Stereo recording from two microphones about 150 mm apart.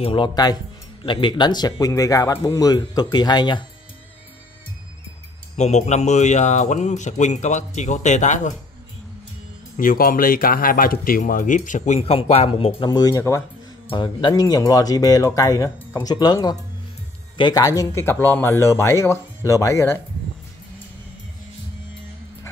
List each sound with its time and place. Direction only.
0.0 s speech: 35° left (ahead or behind)
5.6 s speech: 50° left (ahead or behind)
9.8 s speech: 70° left (ahead or behind); by 13.4 s 20° left (ahead or behind)
13.8 s speech: 30° left (ahead or behind); by 20.0 s 15° left (ahead or behind)